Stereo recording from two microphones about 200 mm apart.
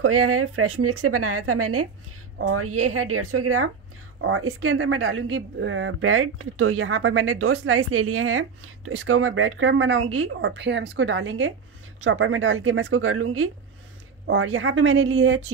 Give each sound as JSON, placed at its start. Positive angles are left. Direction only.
{"t": 0.0, "sound": "speech", "side_deg": -90}
{"t": 4.2, "sound": "speech", "side_deg": -80}
{"t": 12.0, "sound": "speech", "side_deg": -90}
{"t": 14.2, "sound": "speech", "side_deg": -75}